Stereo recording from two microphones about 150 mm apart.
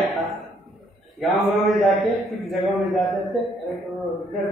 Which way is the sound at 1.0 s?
Centre (ahead or behind).